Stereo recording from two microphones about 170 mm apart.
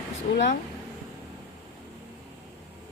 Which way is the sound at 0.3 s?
90° left.